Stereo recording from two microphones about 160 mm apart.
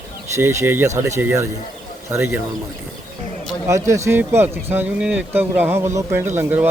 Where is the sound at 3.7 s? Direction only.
20° right (ahead or behind).